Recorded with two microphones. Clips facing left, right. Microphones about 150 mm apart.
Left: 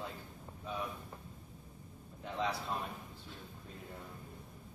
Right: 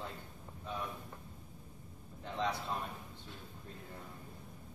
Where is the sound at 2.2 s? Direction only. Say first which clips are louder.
Even; 5° left (ahead or behind).